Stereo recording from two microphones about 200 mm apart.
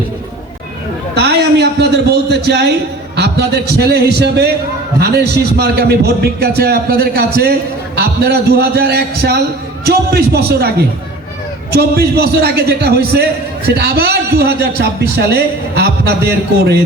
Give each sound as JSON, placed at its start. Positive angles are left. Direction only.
{"t": 1.1, "sound": "a man's voice", "side_deg": -55}